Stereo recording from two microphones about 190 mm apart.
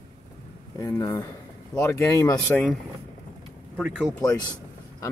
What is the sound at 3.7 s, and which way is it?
Speech, 5° right (ahead or behind).